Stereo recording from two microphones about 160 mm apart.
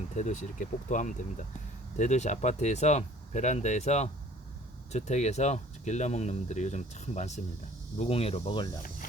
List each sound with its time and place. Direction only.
0.2 s speech: 50° left (ahead or behind); by 8.8 s 25° left (ahead or behind)